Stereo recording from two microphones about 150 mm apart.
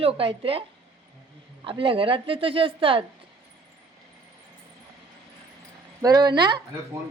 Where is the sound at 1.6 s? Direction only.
35° right (ahead or behind).